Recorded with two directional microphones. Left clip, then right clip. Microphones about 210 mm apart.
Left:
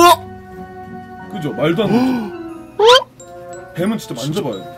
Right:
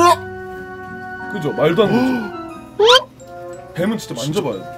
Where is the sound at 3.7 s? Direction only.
10° right (ahead or behind).